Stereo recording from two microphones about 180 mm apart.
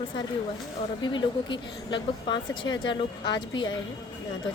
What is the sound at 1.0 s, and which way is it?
Speech, 25° left (ahead or behind).